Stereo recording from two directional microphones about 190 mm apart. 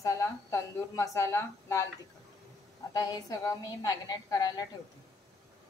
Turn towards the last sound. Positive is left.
turn(degrees=20)  # may be behind; listen again after turning